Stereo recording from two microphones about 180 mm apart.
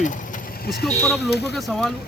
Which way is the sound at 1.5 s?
Centre (ahead or behind).